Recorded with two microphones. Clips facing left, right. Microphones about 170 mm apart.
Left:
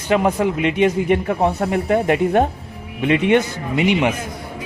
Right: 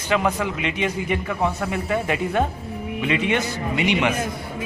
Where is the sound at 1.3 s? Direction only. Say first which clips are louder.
Left 5 dB; 20° left (ahead or behind).